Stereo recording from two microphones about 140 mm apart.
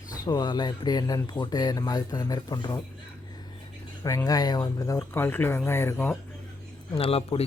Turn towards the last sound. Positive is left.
turn(degrees=45)  # may be behind; listen again after turning